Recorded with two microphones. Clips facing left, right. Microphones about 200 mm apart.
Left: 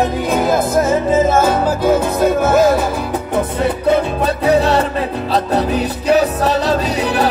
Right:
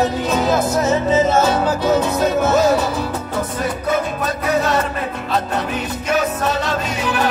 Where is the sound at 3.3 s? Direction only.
30° left (ahead or behind).